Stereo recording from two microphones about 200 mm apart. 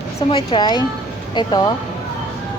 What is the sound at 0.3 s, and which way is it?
A woman's voice, 20° left (ahead or behind).